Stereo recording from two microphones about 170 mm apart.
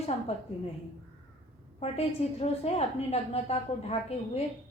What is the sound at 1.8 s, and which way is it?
A woman's voice, 40° left (ahead or behind).